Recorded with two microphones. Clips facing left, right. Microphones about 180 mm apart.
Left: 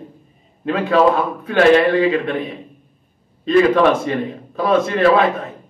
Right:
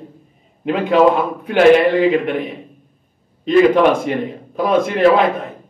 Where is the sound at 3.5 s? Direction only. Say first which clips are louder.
Right 1 dB; 15° right (ahead or behind).